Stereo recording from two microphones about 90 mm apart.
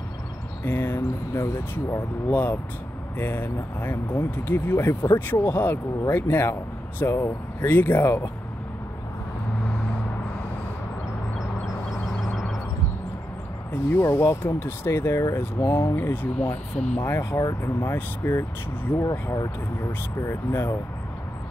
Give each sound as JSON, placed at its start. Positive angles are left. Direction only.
{"t": 0.7, "sound": "speech", "side_deg": 25}
{"t": 13.7, "sound": "speech", "side_deg": 20}
{"t": 17.4, "sound": "speech", "side_deg": 40}
{"t": 18.9, "sound": "speech", "side_deg": 40}
{"t": 20.2, "sound": "speech", "side_deg": 30}